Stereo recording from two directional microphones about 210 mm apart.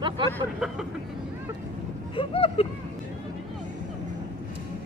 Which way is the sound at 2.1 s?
25° left (ahead or behind).